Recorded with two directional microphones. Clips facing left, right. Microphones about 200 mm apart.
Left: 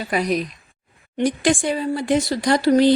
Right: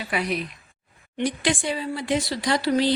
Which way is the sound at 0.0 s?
40° left (ahead or behind).